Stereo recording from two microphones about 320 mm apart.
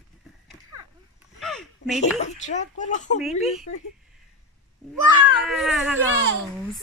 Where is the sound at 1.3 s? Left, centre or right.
Centre.